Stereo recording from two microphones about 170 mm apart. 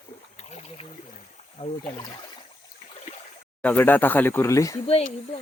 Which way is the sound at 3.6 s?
10° left (ahead or behind).